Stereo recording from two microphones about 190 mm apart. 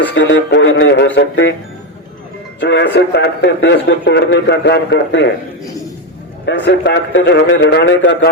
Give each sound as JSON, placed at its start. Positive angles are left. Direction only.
{"t": 0.1, "sound": "speech", "side_deg": 70}
{"t": 2.6, "sound": "speech", "side_deg": 70}
{"t": 6.4, "sound": "speech", "side_deg": 65}